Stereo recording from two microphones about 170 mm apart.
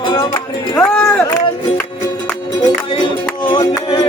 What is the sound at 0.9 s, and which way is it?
Run, 5° left (ahead or behind).